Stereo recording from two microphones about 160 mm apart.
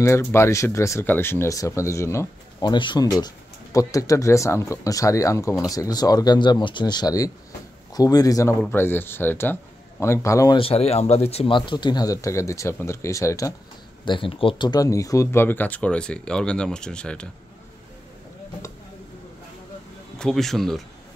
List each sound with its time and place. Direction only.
0.0 s speech: 15° left (ahead or behind)
10.6 s speech: 40° left (ahead or behind); by 13.5 s 20° left (ahead or behind)
14.0 s speech: 30° left (ahead or behind); by 17.3 s 5° left (ahead or behind)
20.2 s speech: 5° left (ahead or behind)